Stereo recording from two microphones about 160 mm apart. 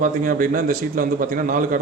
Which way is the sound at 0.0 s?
60° right (ahead or behind).